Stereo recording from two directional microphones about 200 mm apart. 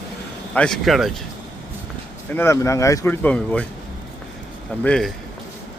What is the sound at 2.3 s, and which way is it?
Speech, 10° left (ahead or behind).